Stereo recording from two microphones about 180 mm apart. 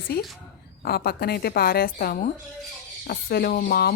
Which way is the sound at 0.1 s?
60° left (ahead or behind).